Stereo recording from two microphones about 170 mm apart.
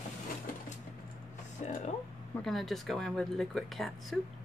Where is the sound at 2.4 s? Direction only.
Centre (ahead or behind).